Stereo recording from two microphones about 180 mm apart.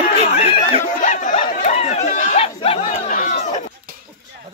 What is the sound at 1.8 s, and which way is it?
Chatter, 35° left (ahead or behind).